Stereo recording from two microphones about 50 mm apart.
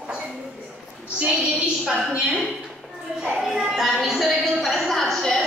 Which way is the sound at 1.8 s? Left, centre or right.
Right.